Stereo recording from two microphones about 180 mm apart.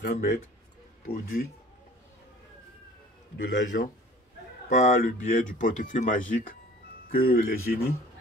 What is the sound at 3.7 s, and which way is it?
Speech, 55° left (ahead or behind).